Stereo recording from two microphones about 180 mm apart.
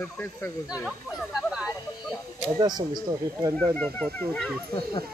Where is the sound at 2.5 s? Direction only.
25° right (ahead or behind).